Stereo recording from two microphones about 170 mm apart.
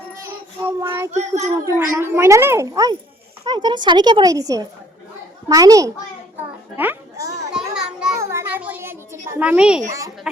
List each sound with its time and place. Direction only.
0.8 s child singing: 15° right (ahead or behind)
1.1 s a child's voice: 40° right (ahead or behind)
1.6 s speech: 15° right (ahead or behind)
6.7 s children playing: 15° right (ahead or behind)
7.5 s children playing: 5° right (ahead or behind)
8.2 s a sound: 15° right (ahead or behind)
9.4 s speech: 5° right (ahead or behind)